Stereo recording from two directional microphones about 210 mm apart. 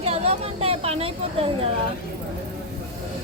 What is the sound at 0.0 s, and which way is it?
Speech, 30° right (ahead or behind).